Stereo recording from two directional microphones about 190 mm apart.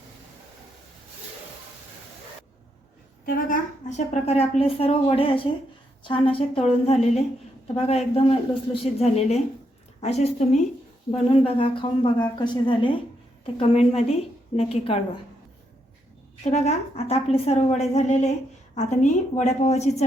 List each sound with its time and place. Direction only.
3.2 s a woman's voice: 45° left (ahead or behind)
16.4 s a woman's voice: 35° left (ahead or behind)